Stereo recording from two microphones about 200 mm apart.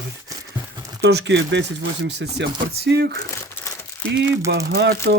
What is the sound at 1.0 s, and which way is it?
Speech, 65° right (ahead or behind).